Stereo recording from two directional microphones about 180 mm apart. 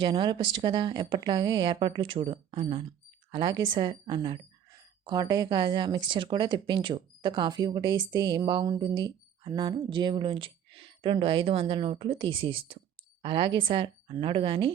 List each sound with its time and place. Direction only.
0.0 s speech: 25° right (ahead or behind)